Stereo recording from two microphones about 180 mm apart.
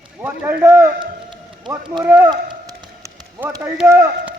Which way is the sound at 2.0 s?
10° right (ahead or behind).